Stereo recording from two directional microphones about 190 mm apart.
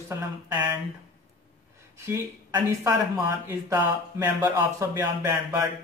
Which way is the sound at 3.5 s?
15° right (ahead or behind).